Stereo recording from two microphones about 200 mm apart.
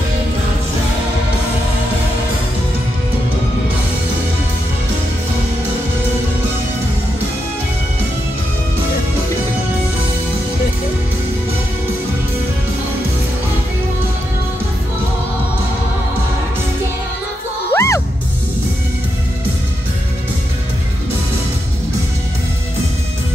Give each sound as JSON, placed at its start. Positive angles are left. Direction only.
{"t": 17.7, "sound": "music", "side_deg": 15}